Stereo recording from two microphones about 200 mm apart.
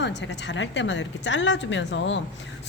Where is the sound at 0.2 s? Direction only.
65° left (ahead or behind).